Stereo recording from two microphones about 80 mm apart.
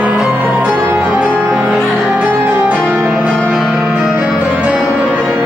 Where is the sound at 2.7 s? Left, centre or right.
Centre.